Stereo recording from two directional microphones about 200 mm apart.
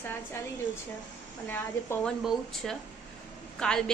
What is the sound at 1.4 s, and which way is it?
A woman's voice, 10° left (ahead or behind).